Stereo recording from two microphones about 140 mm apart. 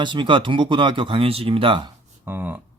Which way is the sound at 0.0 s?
35° right (ahead or behind).